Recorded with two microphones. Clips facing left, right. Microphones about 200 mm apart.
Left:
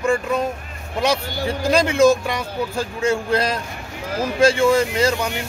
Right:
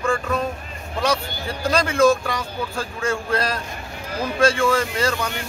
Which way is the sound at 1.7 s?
20° left (ahead or behind).